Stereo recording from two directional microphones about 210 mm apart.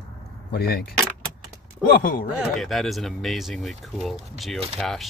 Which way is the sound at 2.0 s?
45° left (ahead or behind).